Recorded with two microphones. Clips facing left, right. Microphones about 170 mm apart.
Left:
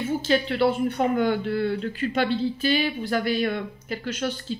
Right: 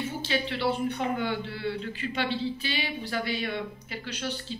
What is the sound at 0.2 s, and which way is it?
Speech, 45° left (ahead or behind).